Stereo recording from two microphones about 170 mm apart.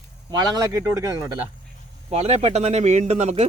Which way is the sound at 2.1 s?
40° right (ahead or behind).